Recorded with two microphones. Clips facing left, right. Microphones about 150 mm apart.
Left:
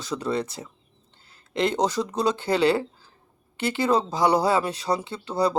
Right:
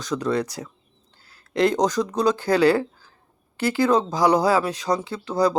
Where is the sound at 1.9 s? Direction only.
5° left (ahead or behind).